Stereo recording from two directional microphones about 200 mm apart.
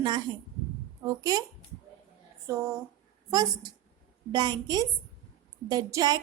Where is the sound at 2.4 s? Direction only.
15° right (ahead or behind).